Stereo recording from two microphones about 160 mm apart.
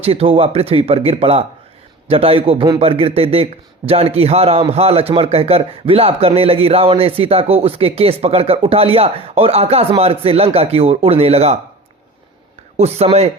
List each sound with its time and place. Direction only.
0.0 s speech: 40° right (ahead or behind)
12.7 s speech: 40° right (ahead or behind)